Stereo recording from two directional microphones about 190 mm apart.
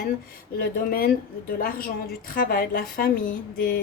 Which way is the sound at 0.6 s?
50° left (ahead or behind).